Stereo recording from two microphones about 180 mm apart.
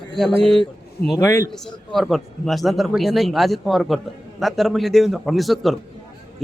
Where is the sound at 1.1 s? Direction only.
20° left (ahead or behind).